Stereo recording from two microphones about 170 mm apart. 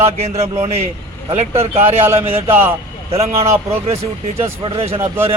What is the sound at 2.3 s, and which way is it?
A man's voice, 35° right (ahead or behind).